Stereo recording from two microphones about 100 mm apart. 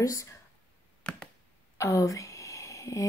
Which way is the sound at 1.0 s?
10° left (ahead or behind).